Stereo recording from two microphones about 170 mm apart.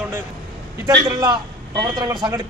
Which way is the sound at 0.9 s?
25° right (ahead or behind).